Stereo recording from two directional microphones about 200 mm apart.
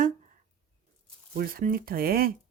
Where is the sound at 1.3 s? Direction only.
45° right (ahead or behind).